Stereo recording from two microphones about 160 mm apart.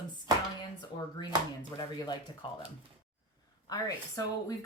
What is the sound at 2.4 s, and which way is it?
Speech, 30° left (ahead or behind).